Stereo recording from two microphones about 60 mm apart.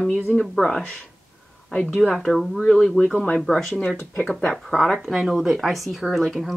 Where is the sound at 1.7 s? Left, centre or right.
Left.